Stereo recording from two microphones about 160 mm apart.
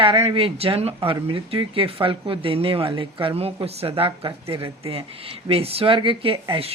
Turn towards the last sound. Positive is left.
turn(degrees=-35)  # may be behind; listen again after turning